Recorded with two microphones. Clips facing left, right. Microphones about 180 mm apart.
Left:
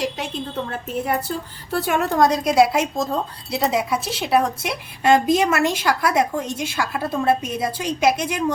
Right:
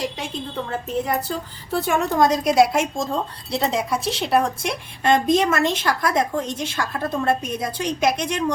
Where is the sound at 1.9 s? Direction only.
Centre (ahead or behind).